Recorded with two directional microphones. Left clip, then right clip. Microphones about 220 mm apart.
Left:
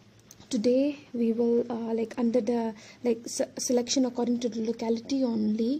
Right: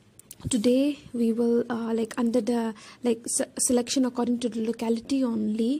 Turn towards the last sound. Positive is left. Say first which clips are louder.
# right 1 dB
turn(degrees=-20)  # may be behind; listen again after turning